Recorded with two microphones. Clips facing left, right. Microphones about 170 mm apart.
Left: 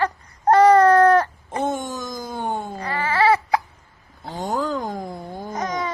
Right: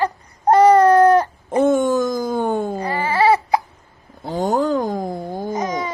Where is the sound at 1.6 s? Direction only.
50° right (ahead or behind).